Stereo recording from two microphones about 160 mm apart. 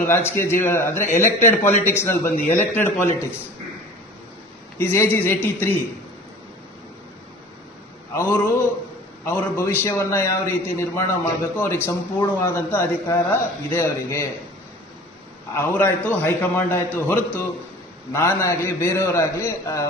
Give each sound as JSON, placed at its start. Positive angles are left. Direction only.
{"t": 0.0, "sound": "a man's voice", "side_deg": 15}
{"t": 4.8, "sound": "a man's voice", "side_deg": 15}
{"t": 8.1, "sound": "a man's voice", "side_deg": 20}
{"t": 15.5, "sound": "a man's voice", "side_deg": 15}